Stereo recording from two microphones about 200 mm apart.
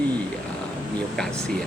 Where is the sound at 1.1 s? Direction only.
5° left (ahead or behind).